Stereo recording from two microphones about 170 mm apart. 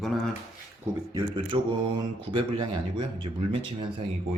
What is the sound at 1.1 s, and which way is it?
Speech, 25° right (ahead or behind).